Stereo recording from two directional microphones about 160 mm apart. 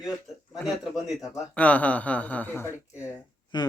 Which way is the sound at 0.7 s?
5° right (ahead or behind).